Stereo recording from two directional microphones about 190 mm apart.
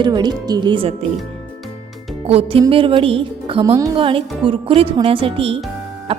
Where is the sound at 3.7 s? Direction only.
15° right (ahead or behind).